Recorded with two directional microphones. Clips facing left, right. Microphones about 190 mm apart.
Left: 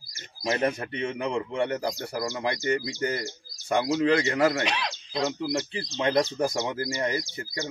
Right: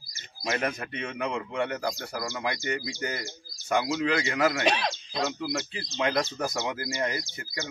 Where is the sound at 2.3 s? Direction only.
40° left (ahead or behind).